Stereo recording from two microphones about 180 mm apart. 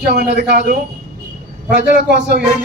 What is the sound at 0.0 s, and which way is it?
Speech, 60° right (ahead or behind).